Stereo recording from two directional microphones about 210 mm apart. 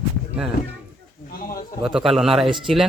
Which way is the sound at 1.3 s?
45° left (ahead or behind).